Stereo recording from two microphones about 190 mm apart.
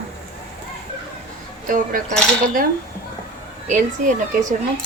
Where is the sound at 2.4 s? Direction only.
45° right (ahead or behind).